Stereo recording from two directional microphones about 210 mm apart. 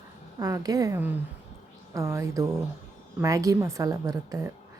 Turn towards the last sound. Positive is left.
turn(degrees=-15)  # may be behind; listen again after turning